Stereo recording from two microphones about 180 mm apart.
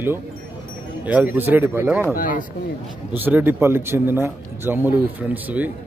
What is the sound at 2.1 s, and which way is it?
Speech, 50° left (ahead or behind).